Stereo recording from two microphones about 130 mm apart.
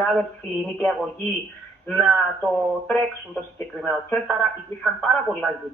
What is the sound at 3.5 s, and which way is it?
Speech, 15° left (ahead or behind).